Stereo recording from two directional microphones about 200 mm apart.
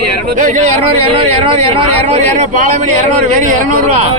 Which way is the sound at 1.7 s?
30° right (ahead or behind).